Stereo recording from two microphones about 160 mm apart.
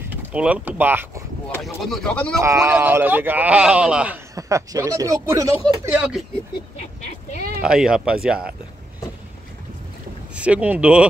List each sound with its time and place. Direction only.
0.1 s speech: 10° right (ahead or behind)
1.6 s speech: 5° left (ahead or behind)
2.4 s speech: 20° right (ahead or behind)
4.4 s speech: 20° right (ahead or behind)
5.9 s speech: centre (ahead or behind)
7.0 s a sound: 45° left (ahead or behind)
7.6 s speech: 5° right (ahead or behind)
10.3 s speech: 10° right (ahead or behind)